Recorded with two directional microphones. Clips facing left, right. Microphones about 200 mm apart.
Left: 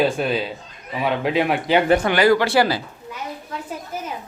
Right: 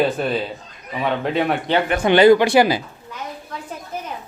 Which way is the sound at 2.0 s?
20° right (ahead or behind).